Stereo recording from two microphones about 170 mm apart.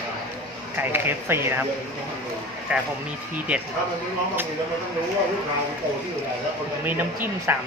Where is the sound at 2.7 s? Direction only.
5° right (ahead or behind).